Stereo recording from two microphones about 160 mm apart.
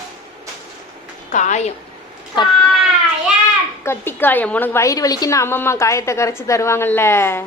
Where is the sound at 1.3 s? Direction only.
50° left (ahead or behind).